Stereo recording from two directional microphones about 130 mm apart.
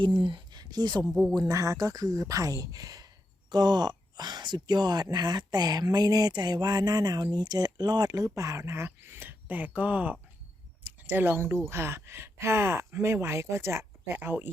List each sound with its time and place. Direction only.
0.0 s speech: 40° right (ahead or behind)
1.0 s speech: 5° right (ahead or behind)
1.5 s speech: 25° right (ahead or behind)